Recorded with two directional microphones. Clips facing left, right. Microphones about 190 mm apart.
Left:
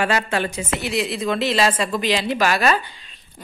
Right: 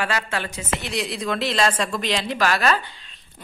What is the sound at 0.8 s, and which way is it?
A woman's voice, centre (ahead or behind).